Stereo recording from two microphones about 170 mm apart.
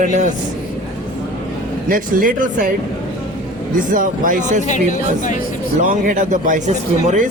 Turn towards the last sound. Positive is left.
turn(degrees=-45)  # may be behind; listen again after turning